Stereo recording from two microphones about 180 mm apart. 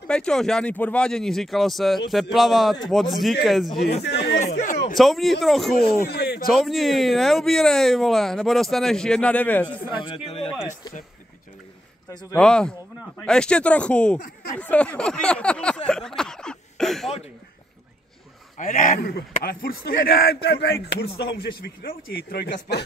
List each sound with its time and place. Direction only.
0.1 s speech: 5° left (ahead or behind)
4.0 s speech: 70° left (ahead or behind)
4.6 s a sound: 45° left (ahead or behind)
4.9 s speech: centre (ahead or behind)
5.8 s speech: 65° left (ahead or behind)
6.5 s speech: centre (ahead or behind)
9.9 s speech: 30° left (ahead or behind)
12.1 s speech: 20° left (ahead or behind)
12.4 s speech: 5° left (ahead or behind)
14.2 s speech: 50° left (ahead or behind)
14.6 s a sound: 10° left (ahead or behind)
18.6 s speech: 45° left (ahead or behind); by 22.8 s 65° left (ahead or behind)